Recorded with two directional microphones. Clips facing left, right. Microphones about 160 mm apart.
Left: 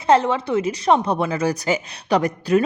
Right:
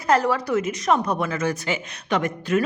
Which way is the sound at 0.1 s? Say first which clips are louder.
Left 3 dB; 25° left (ahead or behind).